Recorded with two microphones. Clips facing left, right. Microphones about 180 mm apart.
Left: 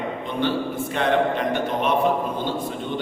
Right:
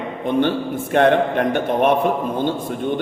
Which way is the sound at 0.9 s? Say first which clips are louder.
Right 6 dB; 55° right (ahead or behind).